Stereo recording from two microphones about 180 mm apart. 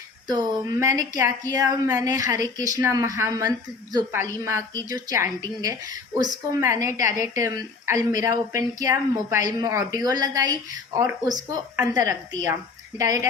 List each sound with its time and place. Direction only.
0.3 s a woman's voice: 20° right (ahead or behind)